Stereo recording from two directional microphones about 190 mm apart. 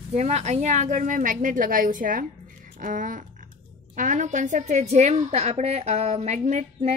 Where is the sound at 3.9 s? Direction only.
45° right (ahead or behind).